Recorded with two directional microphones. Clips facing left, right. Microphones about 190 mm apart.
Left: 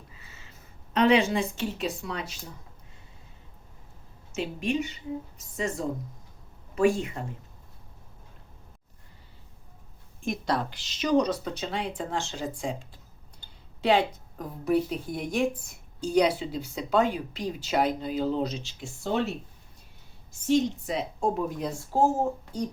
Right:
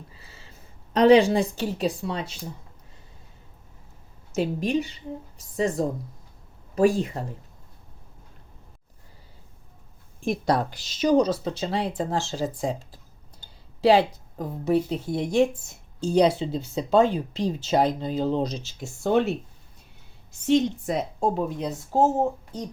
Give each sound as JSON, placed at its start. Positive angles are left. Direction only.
{"t": 0.1, "sound": "a sound", "side_deg": -35}
{"t": 0.9, "sound": "speech", "side_deg": -35}
{"t": 4.3, "sound": "speech", "side_deg": -40}
{"t": 10.2, "sound": "speech", "side_deg": -40}
{"t": 20.8, "sound": "speech", "side_deg": -45}
{"t": 21.2, "sound": "speech", "side_deg": -25}